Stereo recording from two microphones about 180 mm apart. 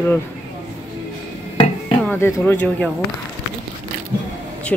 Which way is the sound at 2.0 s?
10° left (ahead or behind).